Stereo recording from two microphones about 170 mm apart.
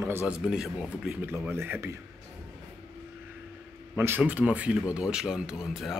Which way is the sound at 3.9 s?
10° right (ahead or behind).